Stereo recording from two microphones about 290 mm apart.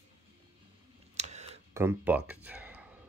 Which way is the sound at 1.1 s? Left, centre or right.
Right.